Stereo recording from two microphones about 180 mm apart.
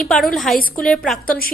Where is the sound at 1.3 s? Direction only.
55° left (ahead or behind).